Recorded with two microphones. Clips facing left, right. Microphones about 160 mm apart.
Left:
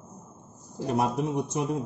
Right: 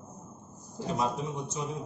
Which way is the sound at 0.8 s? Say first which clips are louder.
Left 5 dB; 65° left (ahead or behind).